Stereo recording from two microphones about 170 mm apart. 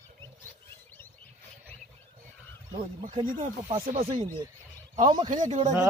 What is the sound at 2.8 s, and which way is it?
A man's voice, 35° right (ahead or behind).